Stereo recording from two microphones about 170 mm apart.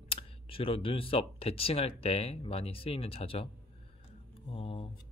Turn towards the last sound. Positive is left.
turn(degrees=35)  # may be behind; listen again after turning